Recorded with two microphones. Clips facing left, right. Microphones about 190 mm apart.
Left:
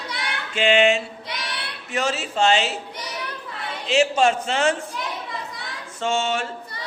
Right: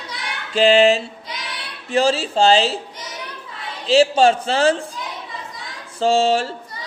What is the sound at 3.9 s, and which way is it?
Speech, 35° right (ahead or behind).